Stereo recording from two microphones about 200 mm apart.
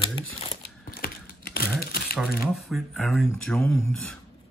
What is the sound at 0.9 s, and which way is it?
Crumpling, 50° left (ahead or behind).